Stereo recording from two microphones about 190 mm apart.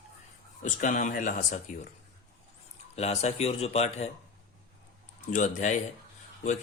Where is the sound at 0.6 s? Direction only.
45° left (ahead or behind).